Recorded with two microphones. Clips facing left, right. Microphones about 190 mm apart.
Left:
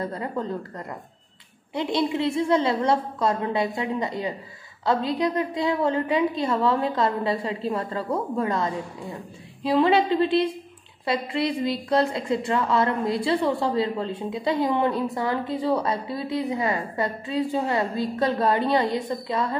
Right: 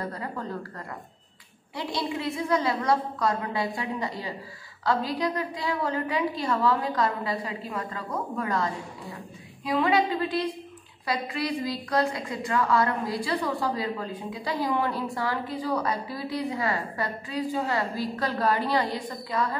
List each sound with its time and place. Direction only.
0.0 s a woman's voice: 25° left (ahead or behind)